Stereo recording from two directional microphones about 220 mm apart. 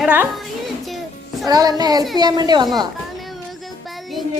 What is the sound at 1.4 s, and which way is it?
A child's voice, 15° right (ahead or behind).